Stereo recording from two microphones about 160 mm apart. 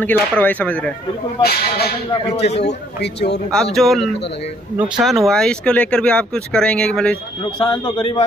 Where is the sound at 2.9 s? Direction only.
90° left.